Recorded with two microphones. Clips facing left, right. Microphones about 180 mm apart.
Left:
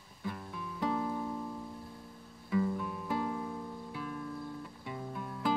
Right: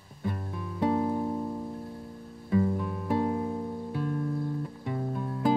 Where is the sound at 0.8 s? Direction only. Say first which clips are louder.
Right 7 dB; 35° right (ahead or behind).